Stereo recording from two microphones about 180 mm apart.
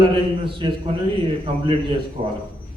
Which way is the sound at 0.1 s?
30° right (ahead or behind).